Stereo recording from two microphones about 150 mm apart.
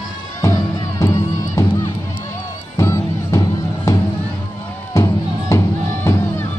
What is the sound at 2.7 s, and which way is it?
Music, 20° left (ahead or behind).